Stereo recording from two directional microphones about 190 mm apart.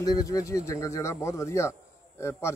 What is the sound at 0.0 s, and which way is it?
A man's voice, 20° left (ahead or behind).